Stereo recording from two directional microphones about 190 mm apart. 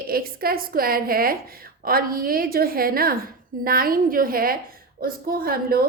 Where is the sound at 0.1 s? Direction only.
50° right (ahead or behind).